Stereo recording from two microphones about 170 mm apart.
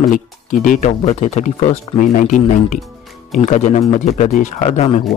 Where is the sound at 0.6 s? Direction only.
45° left (ahead or behind).